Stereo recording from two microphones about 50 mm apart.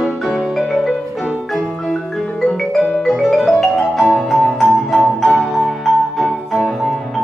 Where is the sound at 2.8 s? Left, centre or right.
Centre.